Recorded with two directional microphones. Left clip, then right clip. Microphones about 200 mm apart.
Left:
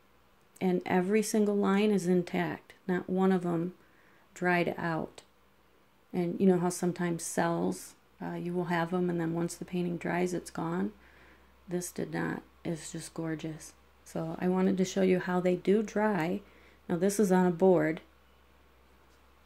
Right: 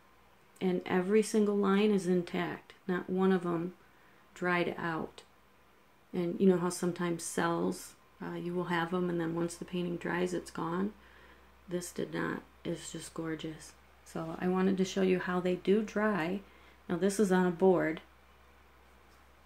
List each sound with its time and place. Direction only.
0.6 s speech: 30° left (ahead or behind)